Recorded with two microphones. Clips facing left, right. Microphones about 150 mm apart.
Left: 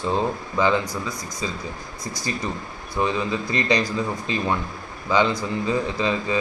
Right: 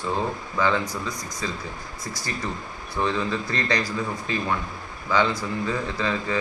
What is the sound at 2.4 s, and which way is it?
Speech, 15° left (ahead or behind).